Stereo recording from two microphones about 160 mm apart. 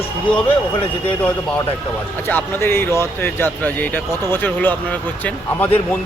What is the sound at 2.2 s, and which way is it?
Speech, 10° left (ahead or behind).